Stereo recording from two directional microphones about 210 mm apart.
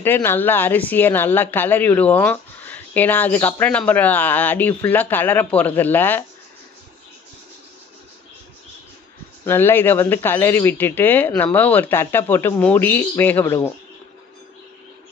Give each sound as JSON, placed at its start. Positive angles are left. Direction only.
{"t": 0.0, "sound": "speech", "side_deg": 10}
{"t": 9.4, "sound": "speech", "side_deg": 10}